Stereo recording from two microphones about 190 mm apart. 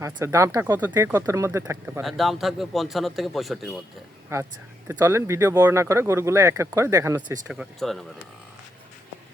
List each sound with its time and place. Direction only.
0.0 s speech: 15° right (ahead or behind)
2.0 s a man's voice: centre (ahead or behind)
4.3 s a man's voice: 15° right (ahead or behind)